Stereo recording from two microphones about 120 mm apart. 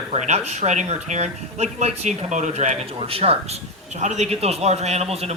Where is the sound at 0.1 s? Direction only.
65° right (ahead or behind).